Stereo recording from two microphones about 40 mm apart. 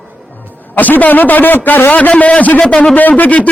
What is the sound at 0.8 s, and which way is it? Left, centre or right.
A man's voice, left.